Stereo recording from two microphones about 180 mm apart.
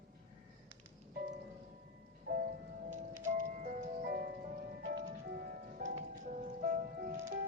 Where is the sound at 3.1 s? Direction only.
50° right (ahead or behind).